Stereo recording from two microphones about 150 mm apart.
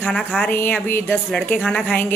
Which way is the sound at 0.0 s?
10° left (ahead or behind).